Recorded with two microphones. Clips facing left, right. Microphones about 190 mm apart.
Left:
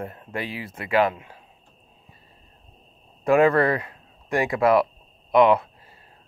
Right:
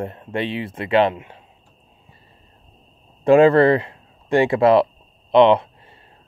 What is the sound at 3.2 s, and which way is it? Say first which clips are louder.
Speech: right 6 dB; 30° right (ahead or behind).